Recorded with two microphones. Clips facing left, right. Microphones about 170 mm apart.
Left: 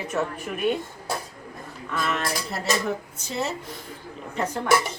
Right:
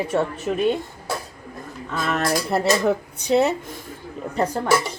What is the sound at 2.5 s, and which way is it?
Speech, 60° right (ahead or behind).